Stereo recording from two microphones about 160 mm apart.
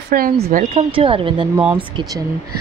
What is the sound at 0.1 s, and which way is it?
Speech, 60° right (ahead or behind).